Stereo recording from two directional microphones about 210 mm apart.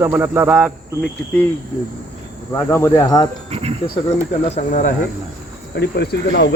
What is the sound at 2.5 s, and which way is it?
Cricket, 15° left (ahead or behind).